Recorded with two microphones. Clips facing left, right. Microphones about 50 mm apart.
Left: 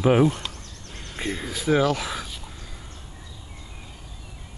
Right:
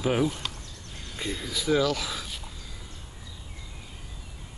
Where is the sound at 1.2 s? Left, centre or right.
Left.